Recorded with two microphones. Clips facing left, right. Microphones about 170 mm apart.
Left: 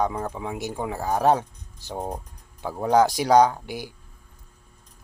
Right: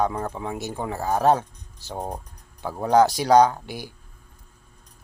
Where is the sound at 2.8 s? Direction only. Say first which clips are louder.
Right 1 dB; 15° left (ahead or behind).